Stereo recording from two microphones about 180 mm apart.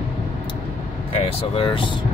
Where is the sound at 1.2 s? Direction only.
30° left (ahead or behind).